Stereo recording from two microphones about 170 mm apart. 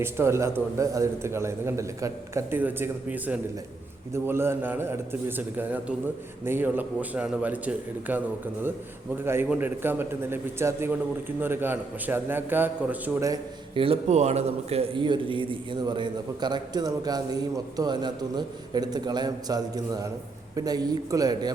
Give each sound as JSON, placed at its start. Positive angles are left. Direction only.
{"t": 0.0, "sound": "a man's voice", "side_deg": -15}
{"t": 9.2, "sound": "a man's voice", "side_deg": -15}
{"t": 13.7, "sound": "a man's voice", "side_deg": -35}